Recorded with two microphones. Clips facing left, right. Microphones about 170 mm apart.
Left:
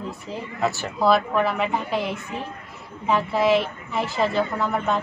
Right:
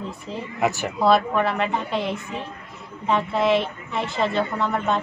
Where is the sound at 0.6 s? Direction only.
15° right (ahead or behind).